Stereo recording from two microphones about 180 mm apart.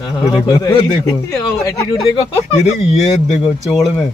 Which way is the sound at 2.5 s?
40° left (ahead or behind).